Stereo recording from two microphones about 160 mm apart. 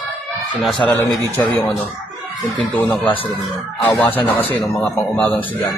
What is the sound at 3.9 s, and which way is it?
Speech, 10° left (ahead or behind).